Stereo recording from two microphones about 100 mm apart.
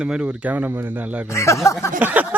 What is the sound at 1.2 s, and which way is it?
Speech, 30° left (ahead or behind).